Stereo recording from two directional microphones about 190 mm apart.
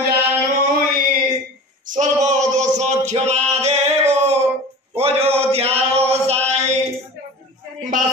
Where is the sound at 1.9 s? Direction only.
40° right (ahead or behind).